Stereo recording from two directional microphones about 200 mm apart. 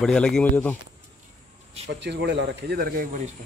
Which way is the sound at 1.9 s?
60° right (ahead or behind).